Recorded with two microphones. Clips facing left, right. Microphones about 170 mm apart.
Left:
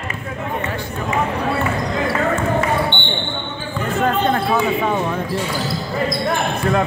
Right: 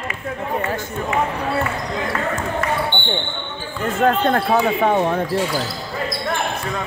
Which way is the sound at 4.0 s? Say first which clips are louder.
Right 1 dB; 55° right (ahead or behind).